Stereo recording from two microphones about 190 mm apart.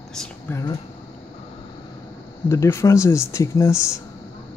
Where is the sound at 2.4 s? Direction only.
15° left (ahead or behind).